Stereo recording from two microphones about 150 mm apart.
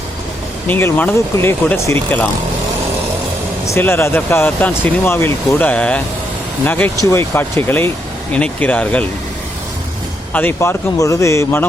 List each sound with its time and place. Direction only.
0.7 s speech: 15° left (ahead or behind)
3.7 s speech: 15° left (ahead or behind)
10.3 s speech: 15° left (ahead or behind)